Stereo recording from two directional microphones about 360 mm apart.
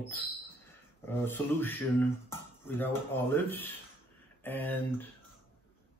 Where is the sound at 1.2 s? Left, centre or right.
Centre.